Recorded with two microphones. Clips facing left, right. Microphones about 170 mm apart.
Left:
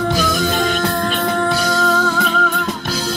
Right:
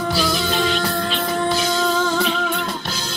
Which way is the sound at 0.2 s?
45° left (ahead or behind).